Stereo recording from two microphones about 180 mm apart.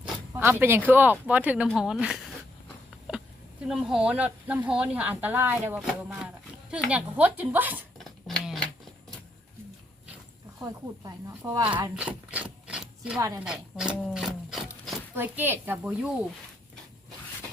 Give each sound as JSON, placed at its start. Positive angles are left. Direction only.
{"t": 0.3, "sound": "speech", "side_deg": -10}
{"t": 3.7, "sound": "speech", "side_deg": 0}
{"t": 7.9, "sound": "a sound", "side_deg": 0}
{"t": 10.6, "sound": "speech", "side_deg": -20}
{"t": 11.9, "sound": "a sound", "side_deg": -10}
{"t": 13.1, "sound": "speech", "side_deg": -20}
{"t": 13.4, "sound": "speech", "side_deg": -5}